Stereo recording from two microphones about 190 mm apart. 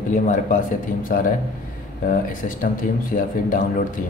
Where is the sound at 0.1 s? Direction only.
40° left (ahead or behind).